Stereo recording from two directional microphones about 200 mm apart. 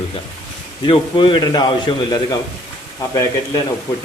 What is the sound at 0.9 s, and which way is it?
A man's voice, 25° left (ahead or behind).